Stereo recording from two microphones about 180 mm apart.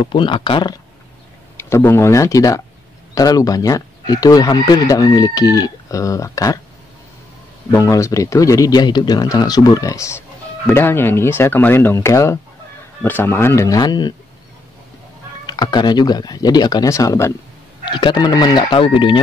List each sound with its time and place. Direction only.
0.0 s speech: 25° left (ahead or behind)
1.6 s speech: 10° left (ahead or behind)
7.7 s speech: 15° left (ahead or behind)
15.4 s speech: 25° left (ahead or behind)